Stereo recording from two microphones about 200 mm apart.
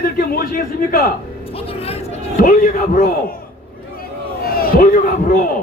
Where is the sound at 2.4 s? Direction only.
45° left (ahead or behind).